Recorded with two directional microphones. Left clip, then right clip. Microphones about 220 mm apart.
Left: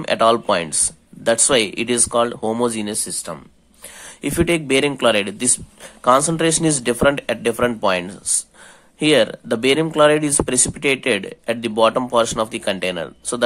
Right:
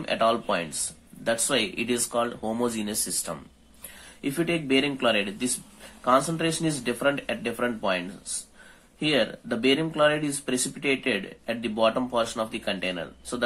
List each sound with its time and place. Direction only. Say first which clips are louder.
0.0 s speech: left 8 dB; 35° left (ahead or behind)
4.2 s speech: left 8 dB; 40° left (ahead or behind)
9.0 s speech: left 9 dB; 35° left (ahead or behind)